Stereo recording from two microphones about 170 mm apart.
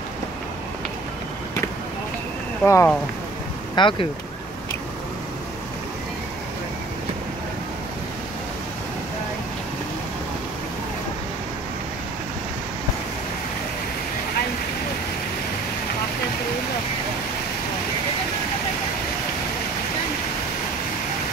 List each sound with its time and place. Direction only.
2.6 s speech: 15° left (ahead or behind)
3.7 s speech: 30° left (ahead or behind)